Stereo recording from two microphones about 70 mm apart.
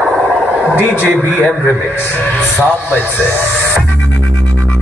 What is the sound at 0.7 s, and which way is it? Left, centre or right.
A man's voice, left.